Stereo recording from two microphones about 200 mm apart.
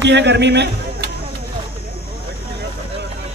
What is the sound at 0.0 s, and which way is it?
A man's voice, 60° right (ahead or behind).